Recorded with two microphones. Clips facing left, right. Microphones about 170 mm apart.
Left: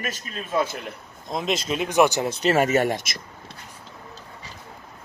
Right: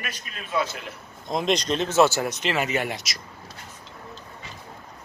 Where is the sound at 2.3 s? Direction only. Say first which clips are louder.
Left 6 dB; 40° left (ahead or behind).